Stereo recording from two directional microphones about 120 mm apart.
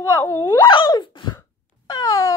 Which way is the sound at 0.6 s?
40° left (ahead or behind).